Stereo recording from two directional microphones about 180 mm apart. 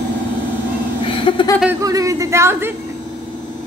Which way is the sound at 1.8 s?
20° right (ahead or behind).